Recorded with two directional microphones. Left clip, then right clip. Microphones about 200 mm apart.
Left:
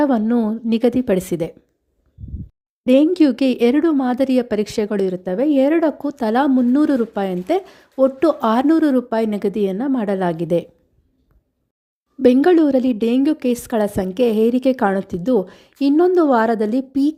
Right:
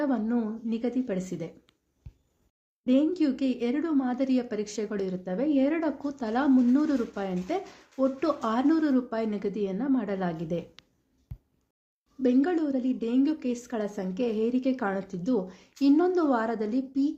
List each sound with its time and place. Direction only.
0.0 s a woman's voice: 40° left (ahead or behind)
2.8 s speech: 45° left (ahead or behind)
12.2 s speech: 45° left (ahead or behind)